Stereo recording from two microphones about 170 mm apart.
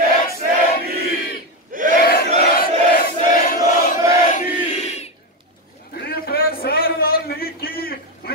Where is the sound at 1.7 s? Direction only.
55° right (ahead or behind).